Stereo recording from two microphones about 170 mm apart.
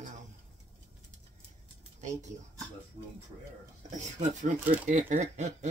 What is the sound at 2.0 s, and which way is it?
Speech, 45° right (ahead or behind).